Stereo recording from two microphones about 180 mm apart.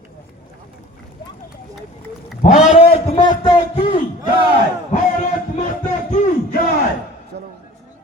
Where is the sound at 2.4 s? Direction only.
40° left (ahead or behind).